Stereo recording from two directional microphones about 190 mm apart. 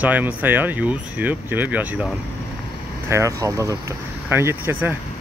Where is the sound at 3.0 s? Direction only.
15° right (ahead or behind).